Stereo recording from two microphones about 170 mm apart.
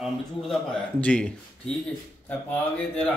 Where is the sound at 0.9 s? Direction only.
10° left (ahead or behind).